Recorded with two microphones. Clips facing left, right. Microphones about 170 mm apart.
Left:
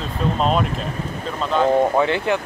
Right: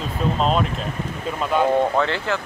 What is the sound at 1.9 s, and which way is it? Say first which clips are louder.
Speech: left 3 dB; 15° left (ahead or behind).